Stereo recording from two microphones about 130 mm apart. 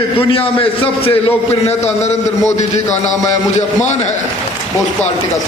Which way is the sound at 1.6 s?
55° left (ahead or behind).